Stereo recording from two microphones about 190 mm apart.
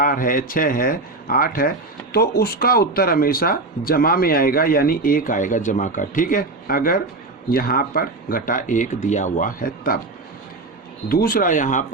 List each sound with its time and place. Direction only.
0.0 s speech: 45° left (ahead or behind)
11.1 s speech: 50° left (ahead or behind)